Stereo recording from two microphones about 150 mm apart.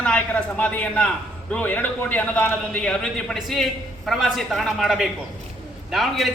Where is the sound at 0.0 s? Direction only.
5° left (ahead or behind).